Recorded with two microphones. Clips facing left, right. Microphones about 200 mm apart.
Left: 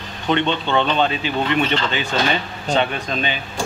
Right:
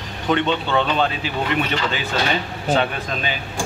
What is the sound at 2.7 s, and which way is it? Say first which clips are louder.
Speech: even; 5° right (ahead or behind).